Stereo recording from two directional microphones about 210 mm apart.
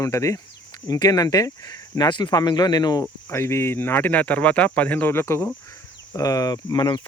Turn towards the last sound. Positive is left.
turn(degrees=20)  # may be behind; listen again after turning